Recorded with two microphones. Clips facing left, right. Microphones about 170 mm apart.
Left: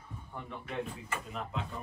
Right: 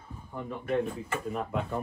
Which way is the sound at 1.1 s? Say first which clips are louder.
Right 7 dB; 55° right (ahead or behind).